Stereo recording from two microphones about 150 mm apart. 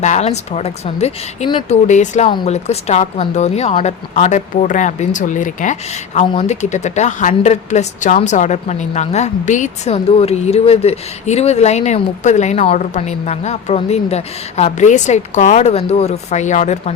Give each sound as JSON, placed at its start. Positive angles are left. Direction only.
{"t": 0.0, "sound": "a woman's voice", "side_deg": 50}